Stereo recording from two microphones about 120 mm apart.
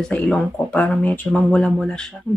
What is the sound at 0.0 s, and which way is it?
Speech, 10° left (ahead or behind).